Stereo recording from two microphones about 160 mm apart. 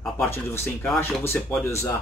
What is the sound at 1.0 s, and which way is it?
Speech, 15° left (ahead or behind).